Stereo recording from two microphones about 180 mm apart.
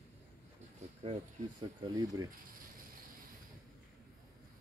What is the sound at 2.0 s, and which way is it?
Mechanisms, 20° right (ahead or behind).